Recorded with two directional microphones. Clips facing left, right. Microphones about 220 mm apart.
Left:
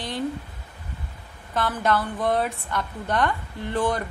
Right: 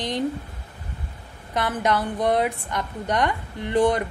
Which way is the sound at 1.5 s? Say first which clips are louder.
Right 1 dB; 15° right (ahead or behind).